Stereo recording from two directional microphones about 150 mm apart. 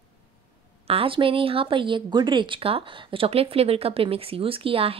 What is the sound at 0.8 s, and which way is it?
A woman's voice, 40° right (ahead or behind).